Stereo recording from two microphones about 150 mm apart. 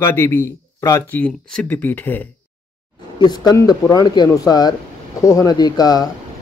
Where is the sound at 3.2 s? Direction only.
25° left (ahead or behind).